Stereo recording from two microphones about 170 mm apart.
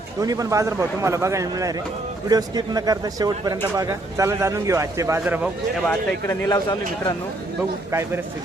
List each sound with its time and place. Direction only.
0.2 s speech: 20° right (ahead or behind)
5.9 s speech: 15° left (ahead or behind)
7.9 s a man's voice: 15° right (ahead or behind)